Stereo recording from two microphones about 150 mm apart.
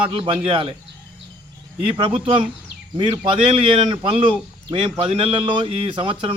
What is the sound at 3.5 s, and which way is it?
A man's voice, 35° right (ahead or behind).